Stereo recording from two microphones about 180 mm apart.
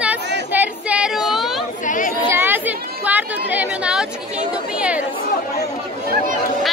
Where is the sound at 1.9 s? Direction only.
45° left (ahead or behind).